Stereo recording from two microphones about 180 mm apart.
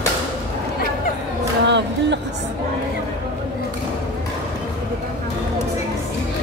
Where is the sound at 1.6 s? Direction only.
75° right (ahead or behind).